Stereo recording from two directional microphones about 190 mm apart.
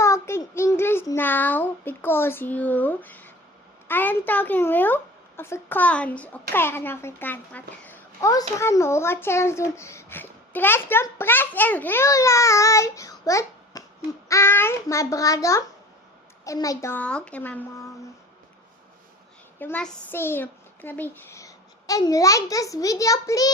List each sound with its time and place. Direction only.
0.0 s a child's voice: 15° left (ahead or behind)
19.5 s a child's voice: 10° left (ahead or behind)